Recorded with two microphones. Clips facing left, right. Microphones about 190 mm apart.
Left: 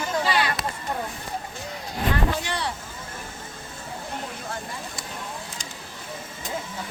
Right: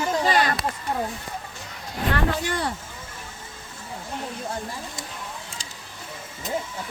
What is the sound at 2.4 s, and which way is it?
Vehicle, 45° right (ahead or behind).